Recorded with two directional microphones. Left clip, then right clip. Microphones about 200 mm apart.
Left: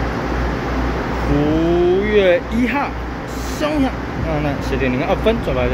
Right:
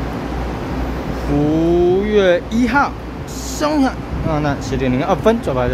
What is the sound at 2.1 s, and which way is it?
Speech, 25° right (ahead or behind).